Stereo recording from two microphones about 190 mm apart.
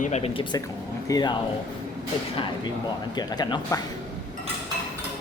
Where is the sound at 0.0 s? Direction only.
35° left (ahead or behind).